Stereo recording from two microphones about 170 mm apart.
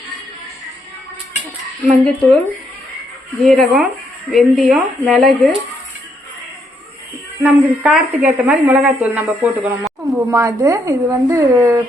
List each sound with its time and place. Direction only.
1.8 s speech: 5° left (ahead or behind)
3.4 s speech: centre (ahead or behind)
7.4 s a woman's voice: 10° right (ahead or behind)